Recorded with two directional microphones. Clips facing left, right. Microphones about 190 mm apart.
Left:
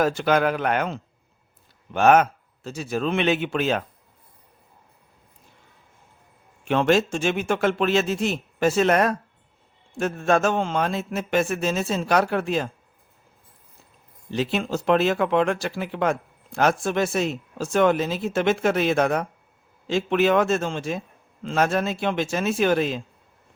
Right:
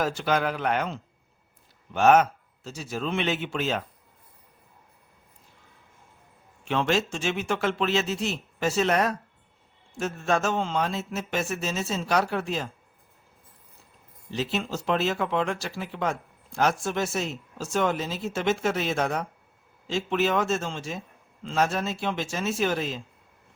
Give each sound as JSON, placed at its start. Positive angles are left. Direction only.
{"t": 0.0, "sound": "speech", "side_deg": 55}
{"t": 6.7, "sound": "speech", "side_deg": 50}
{"t": 14.3, "sound": "speech", "side_deg": 55}